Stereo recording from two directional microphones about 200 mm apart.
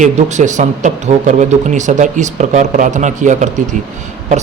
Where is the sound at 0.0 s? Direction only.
35° right (ahead or behind).